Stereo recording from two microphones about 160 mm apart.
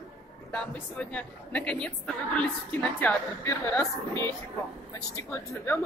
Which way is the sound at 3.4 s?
20° left (ahead or behind).